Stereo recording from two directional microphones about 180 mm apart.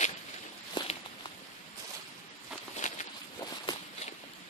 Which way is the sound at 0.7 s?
25° left (ahead or behind).